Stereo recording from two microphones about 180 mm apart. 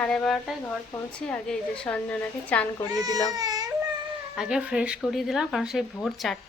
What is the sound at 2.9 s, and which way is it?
Speech, 20° right (ahead or behind).